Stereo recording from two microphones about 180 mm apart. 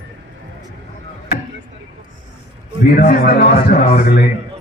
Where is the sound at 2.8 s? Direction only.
60° left (ahead or behind).